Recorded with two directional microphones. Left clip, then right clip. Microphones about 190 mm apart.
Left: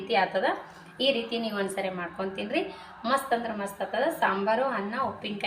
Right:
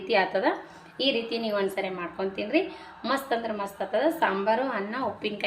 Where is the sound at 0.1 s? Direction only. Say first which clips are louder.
Right 1 dB; 55° right (ahead or behind).